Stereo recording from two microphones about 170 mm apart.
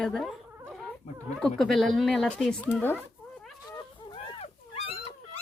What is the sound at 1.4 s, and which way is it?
Speech, centre (ahead or behind).